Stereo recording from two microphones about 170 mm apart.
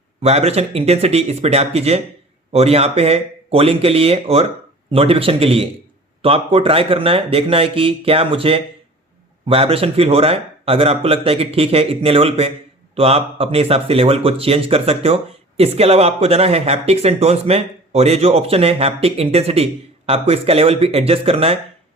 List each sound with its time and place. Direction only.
0.2 s speech: 35° right (ahead or behind)